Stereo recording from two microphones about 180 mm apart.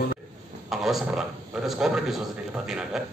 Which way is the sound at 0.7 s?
Centre (ahead or behind).